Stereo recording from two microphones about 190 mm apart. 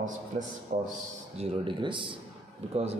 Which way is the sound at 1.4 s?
30° right (ahead or behind).